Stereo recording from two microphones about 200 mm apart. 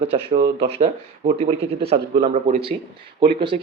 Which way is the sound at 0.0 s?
30° right (ahead or behind).